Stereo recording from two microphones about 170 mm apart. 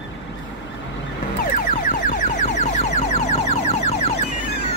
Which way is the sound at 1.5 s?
50° left (ahead or behind).